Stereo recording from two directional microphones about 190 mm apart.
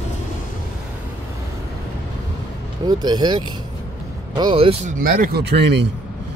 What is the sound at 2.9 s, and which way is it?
Speech, 20° right (ahead or behind).